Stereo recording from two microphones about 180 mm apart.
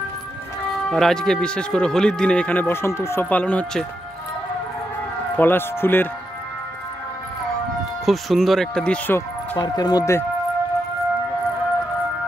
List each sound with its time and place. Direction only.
0.8 s speech: centre (ahead or behind)
5.3 s speech: 10° left (ahead or behind)
8.0 s speech: centre (ahead or behind)
9.6 s speech: 20° left (ahead or behind)